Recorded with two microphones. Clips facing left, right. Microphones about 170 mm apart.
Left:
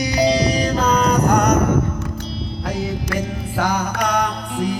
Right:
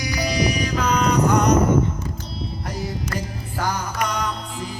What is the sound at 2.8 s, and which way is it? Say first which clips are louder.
Music: left 4 dB; 85° left.